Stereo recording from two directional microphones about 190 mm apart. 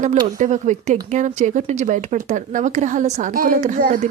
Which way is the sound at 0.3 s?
40° right (ahead or behind).